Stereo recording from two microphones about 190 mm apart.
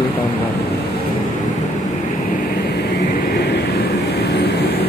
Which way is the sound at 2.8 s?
60° left (ahead or behind).